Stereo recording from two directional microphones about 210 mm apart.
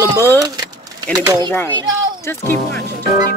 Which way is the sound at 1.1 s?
20° right (ahead or behind).